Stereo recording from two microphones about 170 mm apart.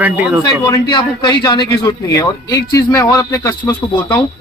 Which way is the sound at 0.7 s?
20° left (ahead or behind).